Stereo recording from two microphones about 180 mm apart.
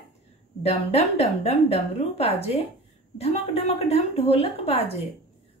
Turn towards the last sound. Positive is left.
turn(degrees=35)  # may be behind; listen again after turning